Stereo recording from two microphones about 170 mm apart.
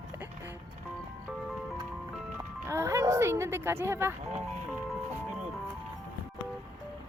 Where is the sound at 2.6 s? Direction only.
15° right (ahead or behind).